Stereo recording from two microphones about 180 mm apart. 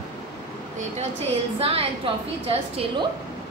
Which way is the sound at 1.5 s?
30° right (ahead or behind).